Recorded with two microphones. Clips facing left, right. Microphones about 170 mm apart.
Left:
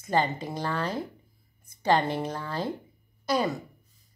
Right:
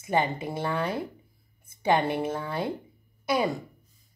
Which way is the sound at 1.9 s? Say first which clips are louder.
Even; 15° right (ahead or behind).